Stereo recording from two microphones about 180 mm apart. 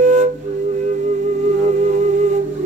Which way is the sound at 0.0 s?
40° right (ahead or behind).